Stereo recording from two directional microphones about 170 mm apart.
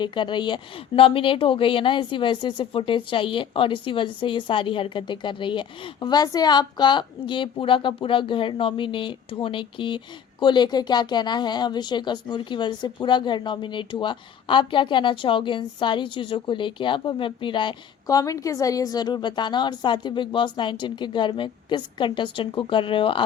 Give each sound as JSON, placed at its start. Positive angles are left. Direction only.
{"t": 0.0, "sound": "a woman's voice", "side_deg": 25}